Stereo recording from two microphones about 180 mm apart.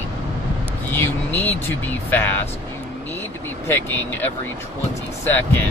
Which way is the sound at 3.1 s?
10° left (ahead or behind).